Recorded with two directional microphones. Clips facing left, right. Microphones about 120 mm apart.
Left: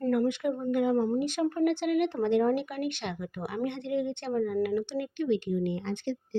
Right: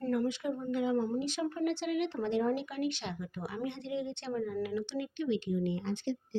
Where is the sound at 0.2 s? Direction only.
55° left (ahead or behind).